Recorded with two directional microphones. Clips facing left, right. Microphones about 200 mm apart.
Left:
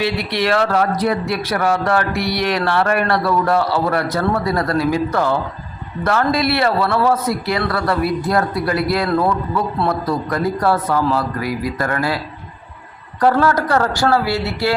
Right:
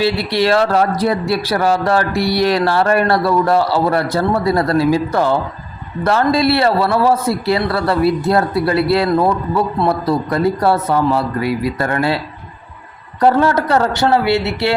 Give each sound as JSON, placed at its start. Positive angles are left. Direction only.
{"t": 0.0, "sound": "speech", "side_deg": -30}